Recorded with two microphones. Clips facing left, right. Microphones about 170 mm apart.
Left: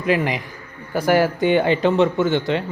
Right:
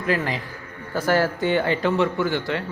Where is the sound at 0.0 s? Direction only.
15° left (ahead or behind).